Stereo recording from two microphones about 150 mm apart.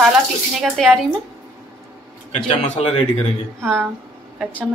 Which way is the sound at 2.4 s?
50° left (ahead or behind).